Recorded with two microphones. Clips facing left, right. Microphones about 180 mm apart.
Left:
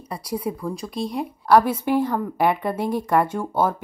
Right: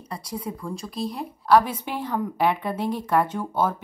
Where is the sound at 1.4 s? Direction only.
10° left (ahead or behind).